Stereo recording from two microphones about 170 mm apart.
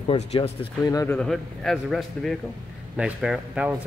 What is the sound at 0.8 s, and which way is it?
Speech, 20° left (ahead or behind).